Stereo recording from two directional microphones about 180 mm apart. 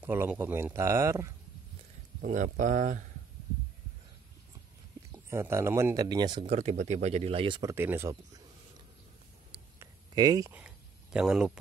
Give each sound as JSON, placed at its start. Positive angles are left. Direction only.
{"t": 0.0, "sound": "speech", "side_deg": -10}
{"t": 2.2, "sound": "speech", "side_deg": -45}
{"t": 5.1, "sound": "speech", "side_deg": -15}
{"t": 7.7, "sound": "speech", "side_deg": -10}
{"t": 9.8, "sound": "a sound", "side_deg": -20}
{"t": 10.5, "sound": "a sound", "side_deg": -5}